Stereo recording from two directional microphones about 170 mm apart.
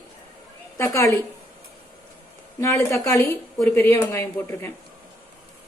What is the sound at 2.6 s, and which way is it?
A woman's voice, 15° left (ahead or behind).